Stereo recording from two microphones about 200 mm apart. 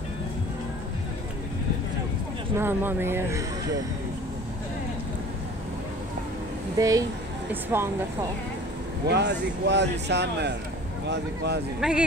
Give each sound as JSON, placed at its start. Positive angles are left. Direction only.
{"t": 2.5, "sound": "speech", "side_deg": -10}
{"t": 6.8, "sound": "speech", "side_deg": -15}
{"t": 9.0, "sound": "speech", "side_deg": -55}
{"t": 11.8, "sound": "speech", "side_deg": -5}